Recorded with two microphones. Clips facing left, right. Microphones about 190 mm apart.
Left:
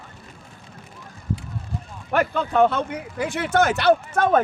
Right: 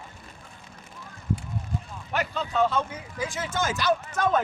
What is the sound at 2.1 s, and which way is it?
Speech, 55° left (ahead or behind).